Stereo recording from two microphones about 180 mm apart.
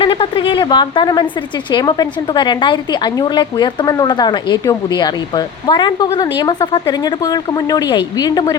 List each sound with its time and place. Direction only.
0.0 s a woman's voice: 30° left (ahead or behind)